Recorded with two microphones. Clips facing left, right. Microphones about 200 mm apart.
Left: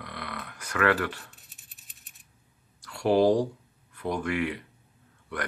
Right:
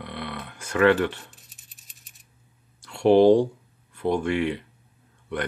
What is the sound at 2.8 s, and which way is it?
Speech, 25° right (ahead or behind).